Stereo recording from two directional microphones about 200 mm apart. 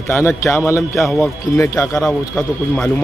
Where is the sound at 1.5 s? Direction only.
15° left (ahead or behind).